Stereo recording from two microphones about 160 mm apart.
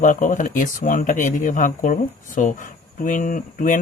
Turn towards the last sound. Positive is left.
turn(degrees=55)  # may be behind; listen again after turning